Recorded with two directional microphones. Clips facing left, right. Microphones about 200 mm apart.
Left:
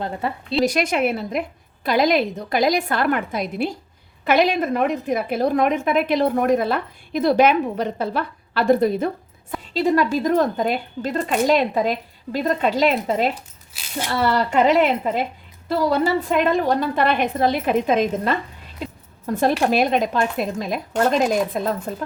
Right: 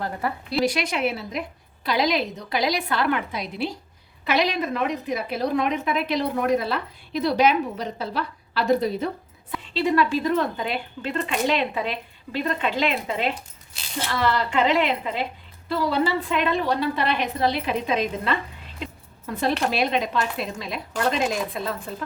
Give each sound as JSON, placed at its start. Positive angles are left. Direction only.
{"t": 0.0, "sound": "a woman's voice", "side_deg": 25}
{"t": 0.6, "sound": "a woman's voice", "side_deg": 45}
{"t": 18.8, "sound": "a sound", "side_deg": 45}
{"t": 19.6, "sound": "a woman's voice", "side_deg": 45}